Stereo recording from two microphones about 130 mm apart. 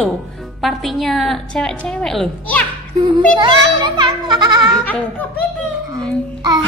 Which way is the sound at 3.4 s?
35° right (ahead or behind).